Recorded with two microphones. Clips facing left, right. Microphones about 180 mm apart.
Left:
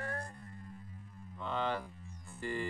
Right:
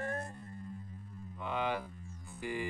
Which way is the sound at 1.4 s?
10° right (ahead or behind).